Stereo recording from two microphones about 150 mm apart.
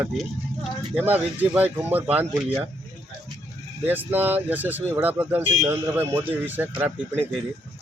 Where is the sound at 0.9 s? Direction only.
10° right (ahead or behind).